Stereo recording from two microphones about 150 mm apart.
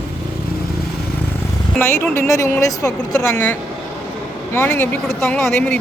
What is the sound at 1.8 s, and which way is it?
Speech, 15° left (ahead or behind).